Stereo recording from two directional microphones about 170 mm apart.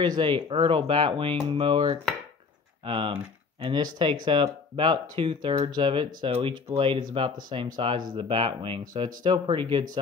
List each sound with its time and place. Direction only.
0.0 s speech: 25° right (ahead or behind)